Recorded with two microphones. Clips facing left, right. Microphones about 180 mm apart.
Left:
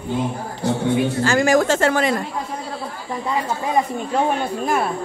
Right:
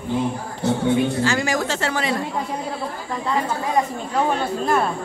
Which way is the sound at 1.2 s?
50° left (ahead or behind).